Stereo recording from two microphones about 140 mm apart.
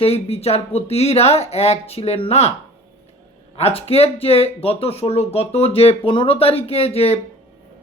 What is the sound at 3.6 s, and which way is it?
Speech, 45° left (ahead or behind).